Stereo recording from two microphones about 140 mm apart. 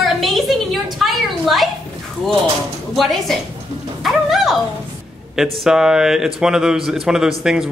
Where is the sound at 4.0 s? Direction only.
Centre (ahead or behind).